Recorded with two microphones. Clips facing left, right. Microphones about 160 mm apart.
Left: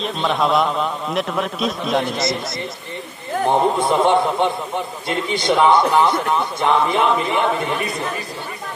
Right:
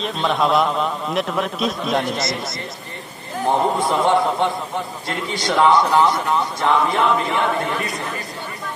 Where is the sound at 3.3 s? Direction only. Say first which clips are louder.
Left 3 dB; 55° left (ahead or behind).